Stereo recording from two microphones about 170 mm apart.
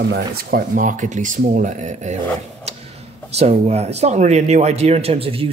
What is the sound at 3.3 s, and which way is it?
Speech, 40° right (ahead or behind).